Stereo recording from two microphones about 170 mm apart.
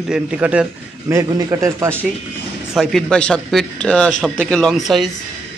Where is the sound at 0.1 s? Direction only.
5° right (ahead or behind).